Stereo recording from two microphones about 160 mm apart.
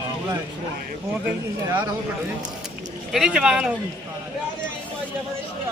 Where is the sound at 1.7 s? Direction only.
20° right (ahead or behind).